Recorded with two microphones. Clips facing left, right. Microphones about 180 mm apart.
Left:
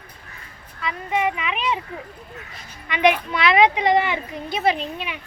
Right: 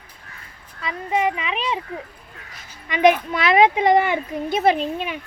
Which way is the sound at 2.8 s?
40° right (ahead or behind).